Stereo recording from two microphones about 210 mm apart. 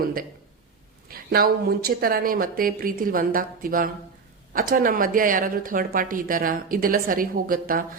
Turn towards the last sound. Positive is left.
turn(degrees=-40)  # may be behind; listen again after turning